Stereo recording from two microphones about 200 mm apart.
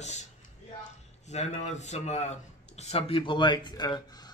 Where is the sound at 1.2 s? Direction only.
35° left (ahead or behind).